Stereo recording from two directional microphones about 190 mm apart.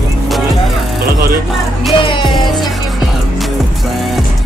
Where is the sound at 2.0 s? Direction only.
25° left (ahead or behind).